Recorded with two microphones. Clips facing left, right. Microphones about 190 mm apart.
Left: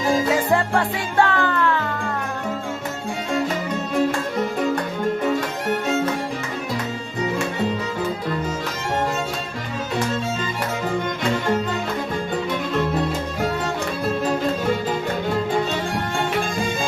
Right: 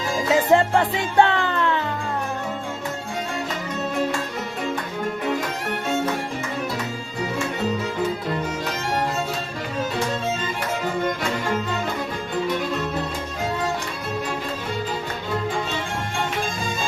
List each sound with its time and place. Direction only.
0.5 s music: 20° right (ahead or behind)